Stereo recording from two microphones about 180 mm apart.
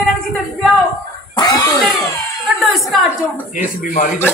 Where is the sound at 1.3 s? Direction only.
20° left (ahead or behind).